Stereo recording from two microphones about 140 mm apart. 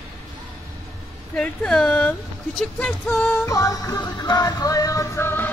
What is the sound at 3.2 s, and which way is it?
Music, 20° left (ahead or behind).